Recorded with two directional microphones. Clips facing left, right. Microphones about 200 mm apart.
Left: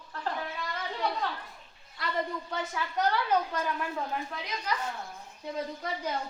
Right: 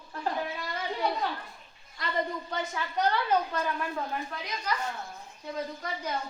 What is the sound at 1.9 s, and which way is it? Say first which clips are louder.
A woman's voice: right 1 dB; 5° left (ahead or behind).